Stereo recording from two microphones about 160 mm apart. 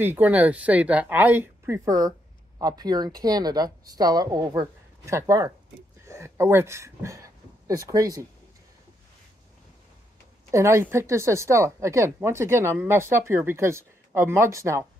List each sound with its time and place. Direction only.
0.0 s speech: 10° right (ahead or behind)
10.5 s speech: 20° right (ahead or behind)